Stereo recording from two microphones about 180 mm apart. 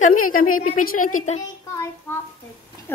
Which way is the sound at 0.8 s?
50° left (ahead or behind).